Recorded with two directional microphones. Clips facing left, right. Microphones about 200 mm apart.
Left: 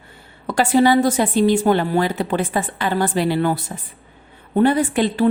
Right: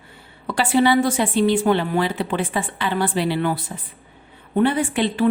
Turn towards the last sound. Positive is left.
turn(degrees=40)  # may be behind; listen again after turning